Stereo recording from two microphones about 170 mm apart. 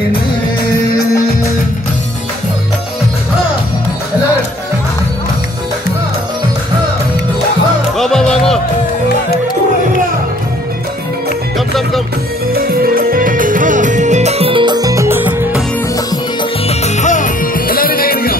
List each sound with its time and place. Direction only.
8.0 s music: 5° left (ahead or behind)
12.5 s music: 60° right (ahead or behind); by 15.6 s 10° right (ahead or behind)
16.6 s music: 45° left (ahead or behind); by 18.3 s 60° left (ahead or behind)